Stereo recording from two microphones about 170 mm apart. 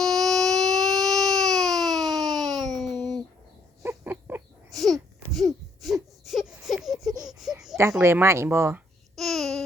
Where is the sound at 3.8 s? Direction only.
15° right (ahead or behind).